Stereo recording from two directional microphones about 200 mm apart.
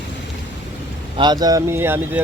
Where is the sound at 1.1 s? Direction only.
20° right (ahead or behind).